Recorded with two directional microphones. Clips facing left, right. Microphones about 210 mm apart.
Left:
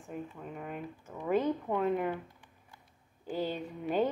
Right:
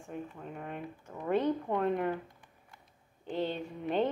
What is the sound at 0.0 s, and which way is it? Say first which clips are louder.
Speech: even; 5° left (ahead or behind).